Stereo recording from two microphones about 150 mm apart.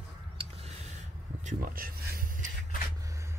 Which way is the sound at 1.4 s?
60° right (ahead or behind).